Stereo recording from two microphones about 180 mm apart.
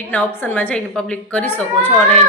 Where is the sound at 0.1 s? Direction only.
10° left (ahead or behind).